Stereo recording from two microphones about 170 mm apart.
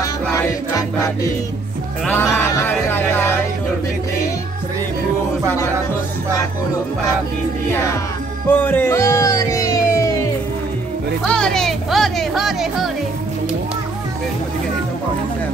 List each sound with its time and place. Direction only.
0.0 s music: 20° left (ahead or behind)
8.5 s music: 10° left (ahead or behind)
11.2 s music: 5° left (ahead or behind)